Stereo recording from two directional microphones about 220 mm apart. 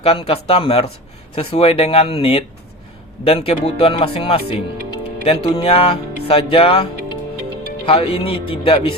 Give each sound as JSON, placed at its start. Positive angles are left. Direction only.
{"t": 0.0, "sound": "speech", "side_deg": 25}